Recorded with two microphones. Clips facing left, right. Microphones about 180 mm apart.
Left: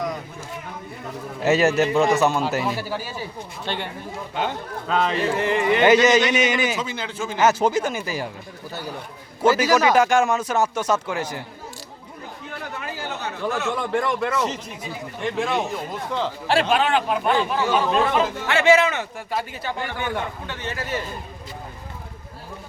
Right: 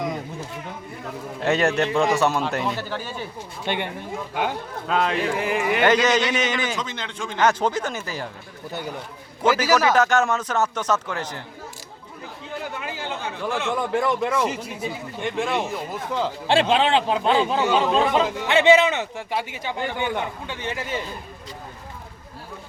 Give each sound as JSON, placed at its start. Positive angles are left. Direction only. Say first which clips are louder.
{"t": 1.4, "sound": "a man's voice", "louder": "left 3 dB", "side_deg": 5}
{"t": 3.7, "sound": "speech", "louder": "right 3 dB", "side_deg": -15}
{"t": 4.4, "sound": "a man's voice", "louder": "even", "side_deg": -5}
{"t": 5.8, "sound": "a man's voice", "louder": "left 4 dB", "side_deg": 10}
{"t": 9.7, "sound": "a man's voice", "louder": "left 1 dB", "side_deg": 10}
{"t": 13.5, "sound": "a man's voice", "louder": "right 1 dB", "side_deg": -10}
{"t": 16.5, "sound": "speech", "louder": "right 1 dB", "side_deg": -20}